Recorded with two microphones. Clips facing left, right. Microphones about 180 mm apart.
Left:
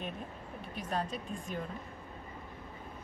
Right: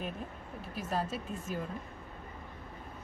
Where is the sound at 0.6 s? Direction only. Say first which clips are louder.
Right 1 dB; 5° right (ahead or behind).